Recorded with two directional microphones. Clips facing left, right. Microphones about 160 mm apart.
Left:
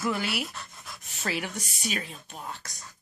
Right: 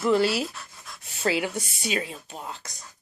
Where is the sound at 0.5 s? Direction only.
Centre (ahead or behind).